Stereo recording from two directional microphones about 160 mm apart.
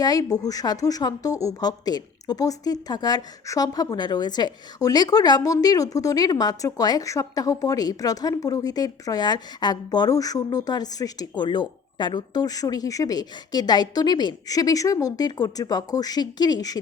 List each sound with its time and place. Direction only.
0.0 s a woman's voice: 25° left (ahead or behind)